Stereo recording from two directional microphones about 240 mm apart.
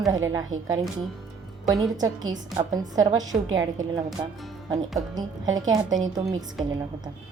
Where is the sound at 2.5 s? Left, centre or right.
Centre.